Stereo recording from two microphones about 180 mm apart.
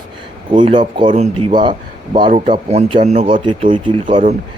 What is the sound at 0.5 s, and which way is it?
Speech, 25° right (ahead or behind).